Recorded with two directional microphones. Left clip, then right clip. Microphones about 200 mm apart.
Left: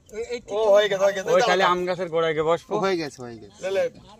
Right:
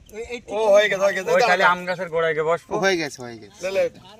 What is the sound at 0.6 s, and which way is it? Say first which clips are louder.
A man's voice: right 2 dB; 35° left (ahead or behind).